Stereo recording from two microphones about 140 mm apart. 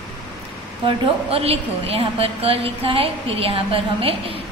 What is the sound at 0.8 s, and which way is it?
A woman's voice, 45° right (ahead or behind).